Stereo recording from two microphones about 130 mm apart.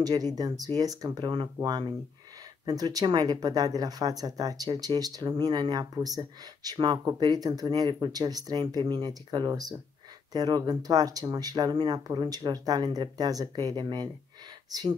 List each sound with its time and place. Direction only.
0.0 s speech: 30° right (ahead or behind)